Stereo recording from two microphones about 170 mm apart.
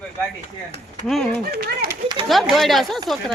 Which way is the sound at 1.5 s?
70° right (ahead or behind).